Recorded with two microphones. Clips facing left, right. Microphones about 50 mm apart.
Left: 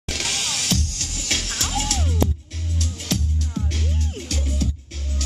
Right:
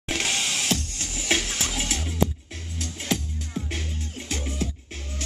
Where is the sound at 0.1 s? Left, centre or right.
Right.